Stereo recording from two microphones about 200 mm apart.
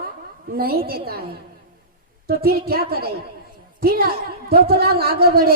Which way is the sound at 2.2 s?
50° right (ahead or behind).